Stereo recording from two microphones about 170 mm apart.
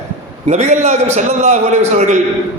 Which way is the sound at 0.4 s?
40° right (ahead or behind).